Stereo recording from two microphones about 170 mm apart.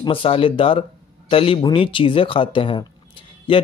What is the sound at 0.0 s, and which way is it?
Speech, 30° left (ahead or behind).